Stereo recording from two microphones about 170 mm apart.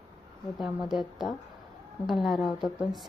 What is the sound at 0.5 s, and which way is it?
A woman's voice, centre (ahead or behind).